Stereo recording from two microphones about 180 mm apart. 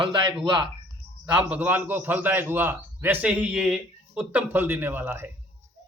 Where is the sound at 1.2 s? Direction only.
10° right (ahead or behind).